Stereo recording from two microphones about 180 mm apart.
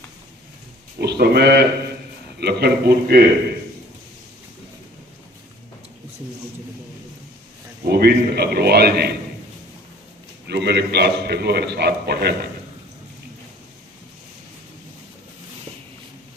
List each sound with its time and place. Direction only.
0.9 s a man's voice: 65° right (ahead or behind)
7.9 s a man's voice: 60° right (ahead or behind)
10.4 s a man's voice: 70° right (ahead or behind)